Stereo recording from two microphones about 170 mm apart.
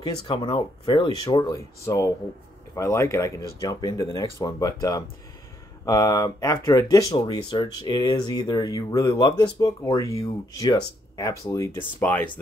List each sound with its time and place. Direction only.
0.0 s speech: 30° left (ahead or behind); by 12.3 s 10° left (ahead or behind)